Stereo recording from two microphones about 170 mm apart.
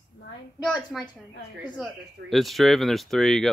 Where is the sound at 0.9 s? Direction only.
10° left (ahead or behind).